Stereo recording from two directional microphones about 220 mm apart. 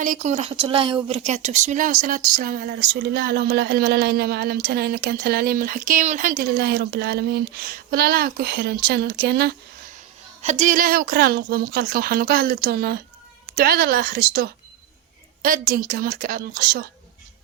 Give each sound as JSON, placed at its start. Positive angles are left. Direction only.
{"t": 0.0, "sound": "speech", "side_deg": -35}
{"t": 10.4, "sound": "a woman's voice", "side_deg": -35}